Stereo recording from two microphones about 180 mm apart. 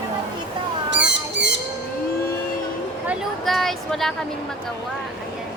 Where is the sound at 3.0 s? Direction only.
Centre (ahead or behind).